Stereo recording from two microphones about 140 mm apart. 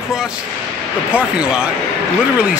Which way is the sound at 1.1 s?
10° right (ahead or behind).